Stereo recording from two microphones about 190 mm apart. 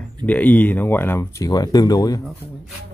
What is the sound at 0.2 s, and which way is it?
Speech, 10° left (ahead or behind).